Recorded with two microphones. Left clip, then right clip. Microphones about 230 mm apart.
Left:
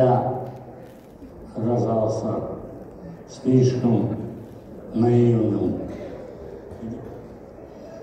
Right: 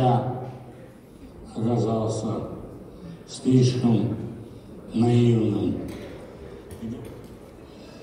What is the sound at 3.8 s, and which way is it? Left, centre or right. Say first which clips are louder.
A man's voice: left 2 dB; right.